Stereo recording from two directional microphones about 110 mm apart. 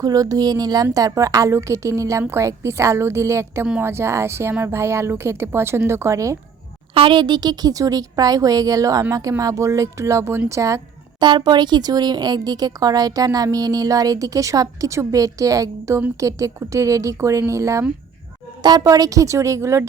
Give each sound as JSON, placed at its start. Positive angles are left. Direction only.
{"t": 0.0, "sound": "a woman's voice", "side_deg": -35}
{"t": 6.9, "sound": "a woman's voice", "side_deg": -50}
{"t": 11.2, "sound": "a woman's voice", "side_deg": -45}